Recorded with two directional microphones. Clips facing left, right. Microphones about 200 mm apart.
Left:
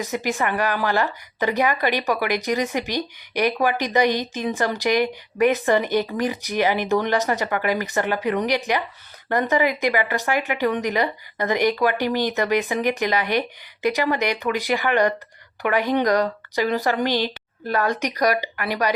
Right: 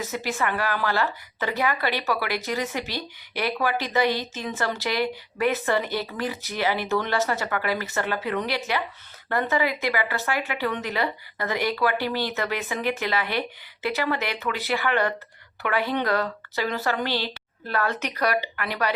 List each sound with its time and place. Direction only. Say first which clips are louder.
0.0 s a woman's voice: left 3 dB; 15° left (ahead or behind)